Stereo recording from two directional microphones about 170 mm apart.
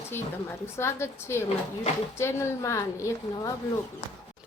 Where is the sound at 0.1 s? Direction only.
15° left (ahead or behind).